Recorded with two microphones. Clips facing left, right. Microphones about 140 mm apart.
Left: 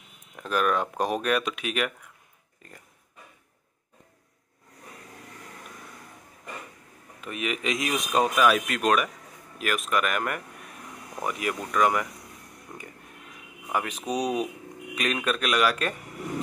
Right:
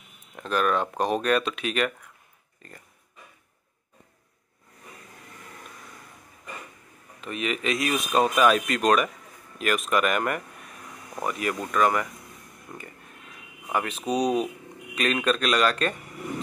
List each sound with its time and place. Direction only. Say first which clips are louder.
0.4 s speech: right 1 dB; 10° left (ahead or behind)
7.2 s speech: right 2 dB; 10° left (ahead or behind)
8.4 s speech: right 2 dB; 5° left (ahead or behind)
11.2 s speech: right 1 dB; 10° left (ahead or behind)